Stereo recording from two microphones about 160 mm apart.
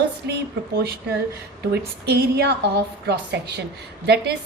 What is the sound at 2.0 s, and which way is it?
A woman's voice, 90° right.